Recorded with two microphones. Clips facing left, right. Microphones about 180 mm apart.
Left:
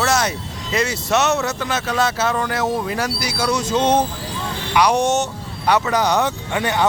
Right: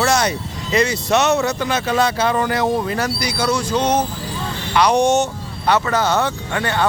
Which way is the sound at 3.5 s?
25° left (ahead or behind).